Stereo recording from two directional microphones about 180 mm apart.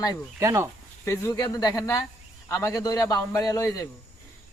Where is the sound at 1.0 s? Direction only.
15° left (ahead or behind).